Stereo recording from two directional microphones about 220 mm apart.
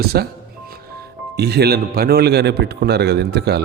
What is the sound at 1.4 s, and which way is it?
A man's voice, 50° right (ahead or behind).